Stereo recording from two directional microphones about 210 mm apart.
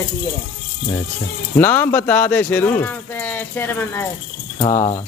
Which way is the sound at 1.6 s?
10° left (ahead or behind).